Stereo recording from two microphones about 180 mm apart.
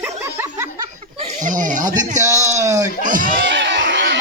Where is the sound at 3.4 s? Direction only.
80° right.